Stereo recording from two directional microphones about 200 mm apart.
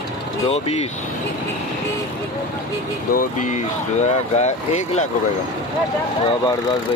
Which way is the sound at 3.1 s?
40° left (ahead or behind).